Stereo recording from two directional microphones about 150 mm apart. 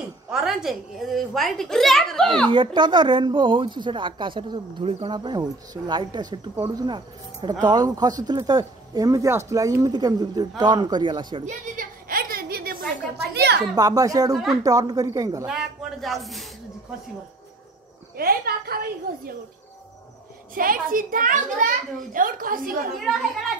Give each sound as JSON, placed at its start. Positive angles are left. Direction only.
{"t": 0.3, "sound": "a woman's voice", "side_deg": 0}
{"t": 2.4, "sound": "speech", "side_deg": -30}
{"t": 11.4, "sound": "a sound", "side_deg": -60}
{"t": 13.7, "sound": "speech", "side_deg": -25}
{"t": 14.3, "sound": "a woman's voice", "side_deg": 0}
{"t": 14.6, "sound": "speech", "side_deg": -25}
{"t": 15.4, "sound": "a woman's voice", "side_deg": 0}
{"t": 18.1, "sound": "a woman's voice", "side_deg": -80}
{"t": 20.5, "sound": "a woman's voice", "side_deg": -70}